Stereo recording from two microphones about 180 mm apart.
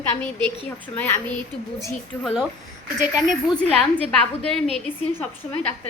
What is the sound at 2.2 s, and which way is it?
Speech, centre (ahead or behind).